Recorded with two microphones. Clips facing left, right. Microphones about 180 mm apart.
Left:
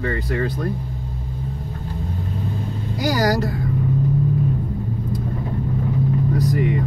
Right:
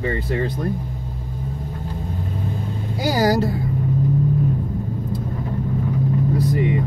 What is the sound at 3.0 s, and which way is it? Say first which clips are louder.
Speech: right 1 dB; 30° right (ahead or behind).